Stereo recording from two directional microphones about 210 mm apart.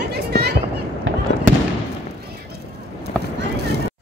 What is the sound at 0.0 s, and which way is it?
Run, 50° right (ahead or behind).